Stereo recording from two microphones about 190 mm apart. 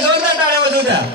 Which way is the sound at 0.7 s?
60° right (ahead or behind).